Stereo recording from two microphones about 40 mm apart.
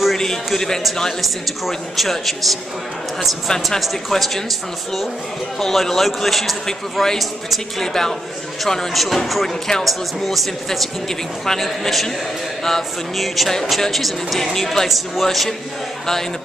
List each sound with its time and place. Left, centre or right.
0.2 s a man's voice: centre
7.2 s speech: centre
7.8 s a man's voice: centre
9.5 s a man's voice: centre
9.8 s speech: centre